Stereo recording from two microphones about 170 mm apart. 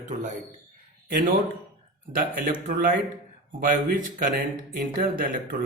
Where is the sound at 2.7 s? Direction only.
50° right (ahead or behind).